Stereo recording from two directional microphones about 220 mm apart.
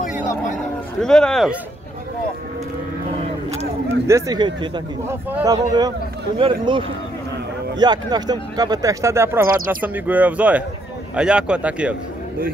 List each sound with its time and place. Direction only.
1.0 s a man's voice: 5° left (ahead or behind)
4.1 s a man's voice: 20° right (ahead or behind)